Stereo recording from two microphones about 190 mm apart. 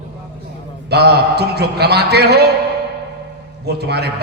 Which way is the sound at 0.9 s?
60° right (ahead or behind).